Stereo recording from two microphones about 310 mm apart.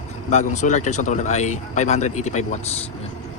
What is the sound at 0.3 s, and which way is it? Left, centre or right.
Speech, left.